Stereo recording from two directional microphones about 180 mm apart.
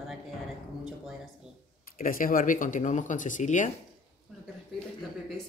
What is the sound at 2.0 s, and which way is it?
Speech, 50° left (ahead or behind).